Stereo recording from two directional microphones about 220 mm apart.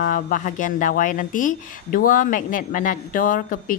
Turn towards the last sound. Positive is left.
turn(degrees=40)  # may be behind; listen again after turning